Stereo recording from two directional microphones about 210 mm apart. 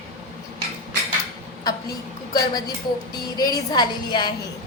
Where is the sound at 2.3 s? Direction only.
20° left (ahead or behind).